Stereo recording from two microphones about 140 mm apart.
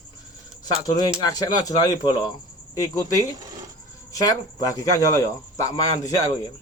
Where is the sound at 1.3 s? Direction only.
25° left (ahead or behind).